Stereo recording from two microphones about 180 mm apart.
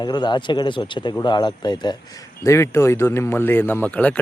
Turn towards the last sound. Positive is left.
turn(degrees=5)  # may be behind; listen again after turning